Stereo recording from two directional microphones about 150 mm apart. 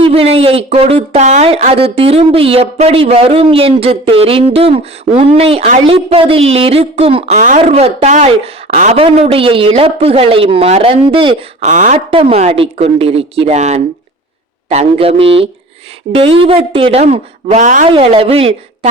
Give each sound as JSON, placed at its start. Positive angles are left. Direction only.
{"t": 0.0, "sound": "speech", "side_deg": -40}
{"t": 5.8, "sound": "speech", "side_deg": -40}
{"t": 7.6, "sound": "speech", "side_deg": -45}
{"t": 11.6, "sound": "a woman's voice", "side_deg": -55}
{"t": 12.1, "sound": "speech", "side_deg": -45}
{"t": 17.8, "sound": "speech", "side_deg": -40}